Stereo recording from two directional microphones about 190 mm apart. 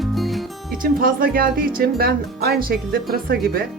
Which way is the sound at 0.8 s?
50° right (ahead or behind).